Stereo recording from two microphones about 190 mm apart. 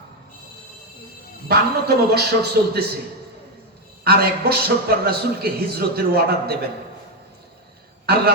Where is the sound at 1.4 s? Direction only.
55° right (ahead or behind).